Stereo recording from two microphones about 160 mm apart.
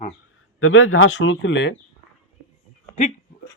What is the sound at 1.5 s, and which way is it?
Speech, 90° left.